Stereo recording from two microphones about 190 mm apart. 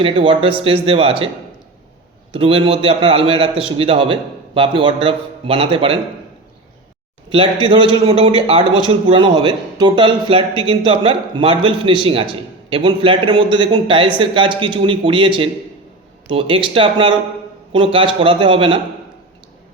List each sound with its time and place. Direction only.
0.0 s a man's voice: 30° right (ahead or behind)
2.3 s a man's voice: 30° right (ahead or behind)
7.3 s a man's voice: 25° right (ahead or behind)